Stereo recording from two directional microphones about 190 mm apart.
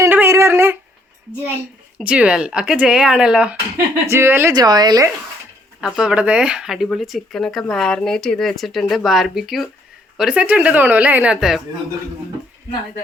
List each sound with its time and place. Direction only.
0.0 s a sound: 10° right (ahead or behind)
2.0 s speech: 5° right (ahead or behind)
5.8 s speech: 5° right (ahead or behind)